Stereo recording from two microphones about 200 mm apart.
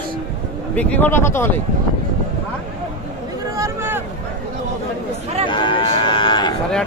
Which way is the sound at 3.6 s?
10° right (ahead or behind).